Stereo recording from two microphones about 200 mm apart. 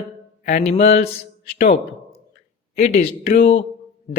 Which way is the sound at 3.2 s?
45° left (ahead or behind).